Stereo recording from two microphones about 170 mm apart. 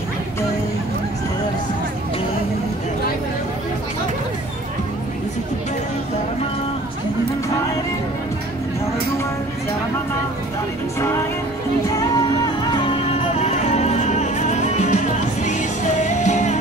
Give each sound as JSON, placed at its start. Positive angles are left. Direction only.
{"t": 11.0, "sound": "music", "side_deg": 15}
{"t": 13.5, "sound": "music", "side_deg": 40}